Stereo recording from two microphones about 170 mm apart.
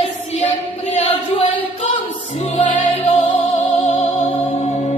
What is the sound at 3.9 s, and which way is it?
Music, 40° left (ahead or behind).